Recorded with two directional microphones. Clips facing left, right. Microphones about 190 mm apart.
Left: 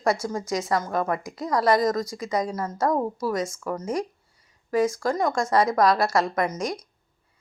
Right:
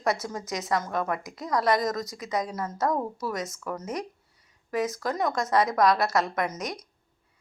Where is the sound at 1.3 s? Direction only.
Centre (ahead or behind).